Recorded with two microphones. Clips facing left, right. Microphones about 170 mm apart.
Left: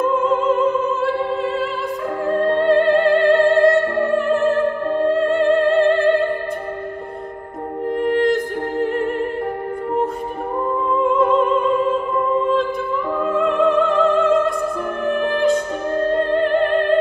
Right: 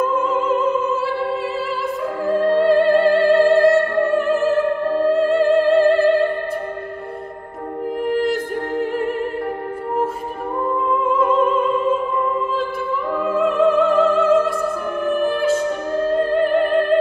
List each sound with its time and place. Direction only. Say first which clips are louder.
2.2 s music: right 1 dB; 5° right (ahead or behind)
5.4 s music: even; 5° right (ahead or behind)
8.0 s music: left 3 dB; 5° right (ahead or behind)
13.2 s music: right 1 dB; 5° right (ahead or behind)